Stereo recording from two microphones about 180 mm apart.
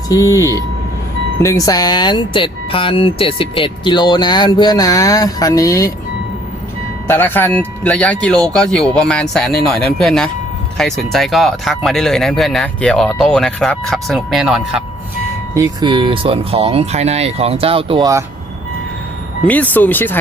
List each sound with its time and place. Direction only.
0.1 s speech: 20° left (ahead or behind)
7.1 s speech: 10° left (ahead or behind)
15.5 s speech: 20° right (ahead or behind)
19.5 s speech: 10° left (ahead or behind)